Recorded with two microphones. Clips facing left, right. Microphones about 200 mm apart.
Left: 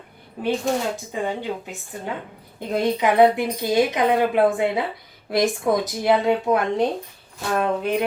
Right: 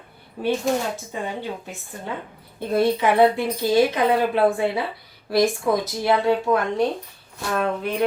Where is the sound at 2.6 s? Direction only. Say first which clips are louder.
Right 2 dB; 15° left (ahead or behind).